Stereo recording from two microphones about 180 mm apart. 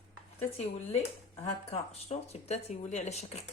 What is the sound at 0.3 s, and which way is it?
Speech, 35° left (ahead or behind).